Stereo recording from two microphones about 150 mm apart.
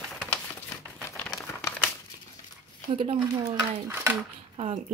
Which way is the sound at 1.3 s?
20° left (ahead or behind).